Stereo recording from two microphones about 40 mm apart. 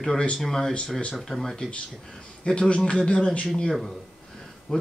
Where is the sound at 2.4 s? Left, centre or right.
Left.